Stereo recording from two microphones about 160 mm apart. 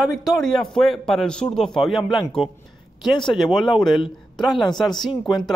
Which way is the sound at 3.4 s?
Centre (ahead or behind).